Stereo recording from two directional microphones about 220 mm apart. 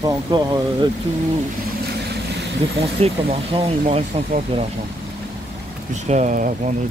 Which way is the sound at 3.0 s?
25° right (ahead or behind).